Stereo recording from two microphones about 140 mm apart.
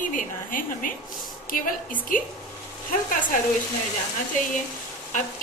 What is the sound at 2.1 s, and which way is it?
Speech, 75° left (ahead or behind).